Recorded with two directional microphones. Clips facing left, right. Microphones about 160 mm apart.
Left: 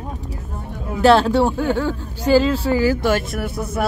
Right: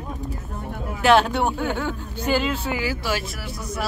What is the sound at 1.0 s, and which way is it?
Speech, 30° left (ahead or behind).